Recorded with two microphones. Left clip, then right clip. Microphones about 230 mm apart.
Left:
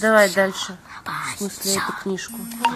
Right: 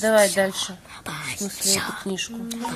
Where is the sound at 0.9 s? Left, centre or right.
Right.